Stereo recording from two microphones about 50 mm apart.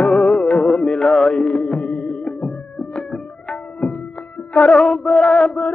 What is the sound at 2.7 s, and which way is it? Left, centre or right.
Music, centre.